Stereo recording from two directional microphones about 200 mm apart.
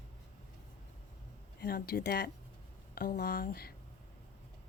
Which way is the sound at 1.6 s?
50° left (ahead or behind).